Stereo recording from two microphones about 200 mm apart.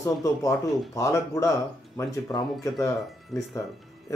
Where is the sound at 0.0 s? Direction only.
15° left (ahead or behind).